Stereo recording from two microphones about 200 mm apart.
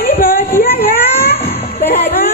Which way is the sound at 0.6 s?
50° left (ahead or behind).